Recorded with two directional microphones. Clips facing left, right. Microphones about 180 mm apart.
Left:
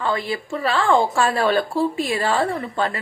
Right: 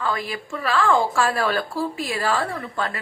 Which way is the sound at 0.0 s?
25° left (ahead or behind).